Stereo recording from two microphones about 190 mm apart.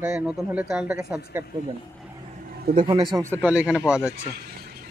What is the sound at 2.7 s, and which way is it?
Speech, 55° right (ahead or behind).